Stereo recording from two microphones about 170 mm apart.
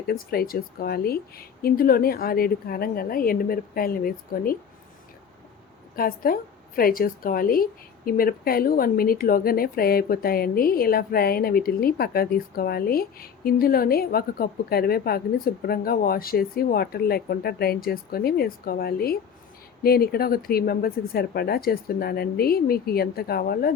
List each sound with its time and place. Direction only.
0.1 s a woman's voice: 65° left (ahead or behind)
6.0 s a woman's voice: 60° left (ahead or behind)